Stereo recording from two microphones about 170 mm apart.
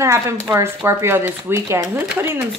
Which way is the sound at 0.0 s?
15° right (ahead or behind).